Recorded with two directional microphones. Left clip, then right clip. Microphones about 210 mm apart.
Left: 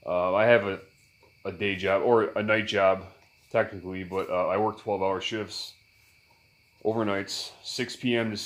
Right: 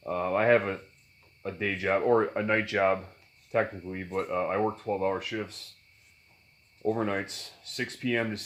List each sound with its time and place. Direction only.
0.0 s a sound: 35° left (ahead or behind)
1.4 s speech: 35° left (ahead or behind)
6.8 s speech: 35° left (ahead or behind)